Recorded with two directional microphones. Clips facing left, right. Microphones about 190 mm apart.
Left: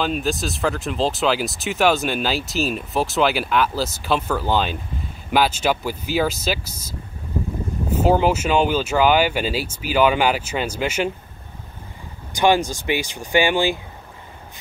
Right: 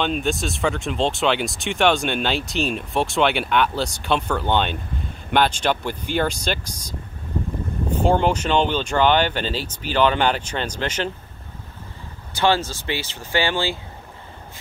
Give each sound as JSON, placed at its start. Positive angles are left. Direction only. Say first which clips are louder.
{"t": 0.0, "sound": "speech", "louder": "even", "side_deg": 0}
{"t": 12.3, "sound": "speech", "louder": "left 3 dB", "side_deg": 15}